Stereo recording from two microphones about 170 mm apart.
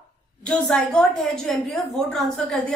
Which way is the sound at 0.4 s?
5° left (ahead or behind).